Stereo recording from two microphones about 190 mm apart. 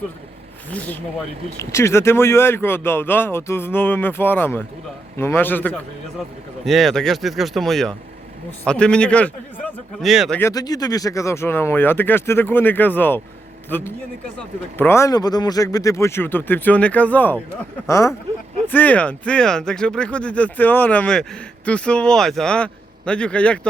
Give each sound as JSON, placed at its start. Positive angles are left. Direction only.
{"t": 0.7, "sound": "speech", "side_deg": 10}
{"t": 10.4, "sound": "a man's voice", "side_deg": 20}